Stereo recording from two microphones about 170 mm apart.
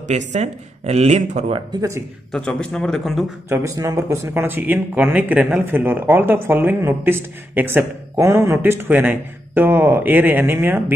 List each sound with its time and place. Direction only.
0.3 s speech: 40° right (ahead or behind)
1.8 s speech: 15° right (ahead or behind)
2.3 s a man's voice: 5° left (ahead or behind)
3.4 s speech: 15° right (ahead or behind)